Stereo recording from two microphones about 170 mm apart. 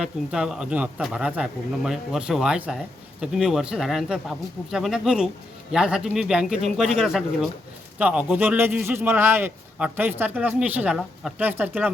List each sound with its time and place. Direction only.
0.0 s a man's voice: 5° right (ahead or behind)